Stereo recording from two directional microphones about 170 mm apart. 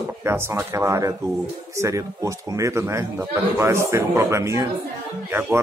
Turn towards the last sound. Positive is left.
turn(degrees=-10)  # may be behind; listen again after turning